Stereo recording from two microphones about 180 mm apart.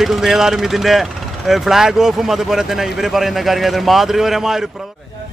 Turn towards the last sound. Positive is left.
turn(degrees=0)  # may be behind; listen again after turning